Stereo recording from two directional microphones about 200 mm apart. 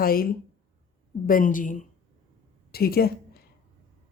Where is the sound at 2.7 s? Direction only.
50° left (ahead or behind).